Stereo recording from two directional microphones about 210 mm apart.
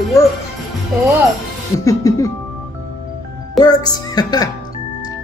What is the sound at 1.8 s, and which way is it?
Music, 15° left (ahead or behind).